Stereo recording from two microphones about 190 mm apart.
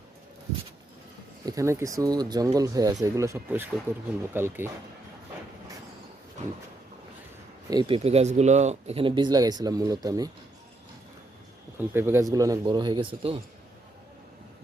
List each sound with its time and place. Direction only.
1.5 s speech: 15° right (ahead or behind)
7.7 s speech: 25° right (ahead or behind)
11.8 s speech: 10° right (ahead or behind); by 13.4 s 30° right (ahead or behind)